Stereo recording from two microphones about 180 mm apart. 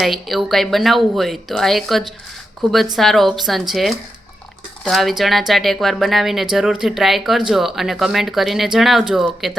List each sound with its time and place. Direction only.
0.0 s speech: centre (ahead or behind)